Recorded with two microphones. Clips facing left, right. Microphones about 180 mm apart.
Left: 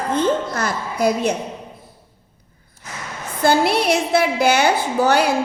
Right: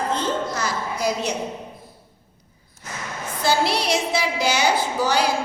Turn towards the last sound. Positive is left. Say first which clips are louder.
# left 4 dB
turn(degrees=60)  # may be behind; listen again after turning